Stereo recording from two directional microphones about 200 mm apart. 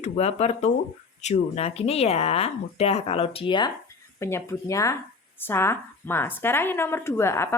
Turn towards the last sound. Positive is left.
turn(degrees=15)  # may be behind; listen again after turning